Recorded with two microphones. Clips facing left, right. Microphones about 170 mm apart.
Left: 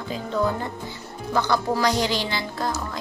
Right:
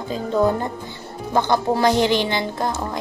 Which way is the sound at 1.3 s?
25° right (ahead or behind).